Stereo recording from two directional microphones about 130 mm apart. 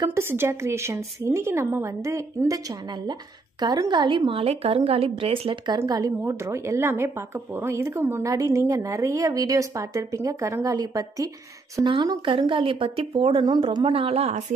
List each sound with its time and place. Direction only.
0.0 s a woman's voice: 20° right (ahead or behind); by 5.8 s 45° right (ahead or behind)
5.8 s a woman's voice: 30° right (ahead or behind); by 14.4 s 50° right (ahead or behind)